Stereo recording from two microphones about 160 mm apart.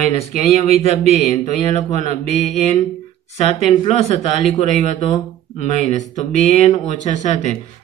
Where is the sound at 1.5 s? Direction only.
45° left (ahead or behind).